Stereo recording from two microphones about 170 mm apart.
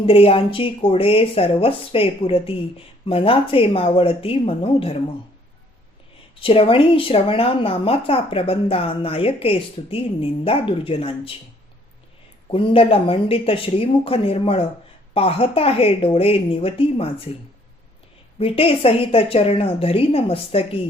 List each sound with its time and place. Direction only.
0.0 s speech: 35° left (ahead or behind)
6.4 s speech: 30° left (ahead or behind)
12.5 s speech: 30° left (ahead or behind)
18.3 s speech: 35° left (ahead or behind)